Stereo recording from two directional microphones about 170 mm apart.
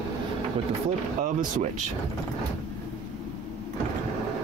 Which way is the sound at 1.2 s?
45° right (ahead or behind).